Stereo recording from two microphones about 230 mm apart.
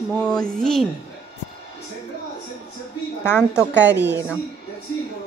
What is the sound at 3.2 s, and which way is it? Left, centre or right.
Speech, centre.